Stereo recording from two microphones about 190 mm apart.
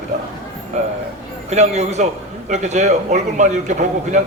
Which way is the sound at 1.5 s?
35° right (ahead or behind).